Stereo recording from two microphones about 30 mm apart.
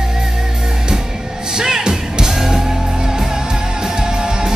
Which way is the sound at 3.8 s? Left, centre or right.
Right.